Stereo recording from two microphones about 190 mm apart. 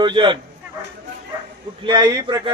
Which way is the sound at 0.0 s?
25° right (ahead or behind).